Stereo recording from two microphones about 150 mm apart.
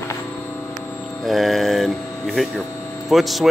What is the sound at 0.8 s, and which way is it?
Mantra, 15° left (ahead or behind).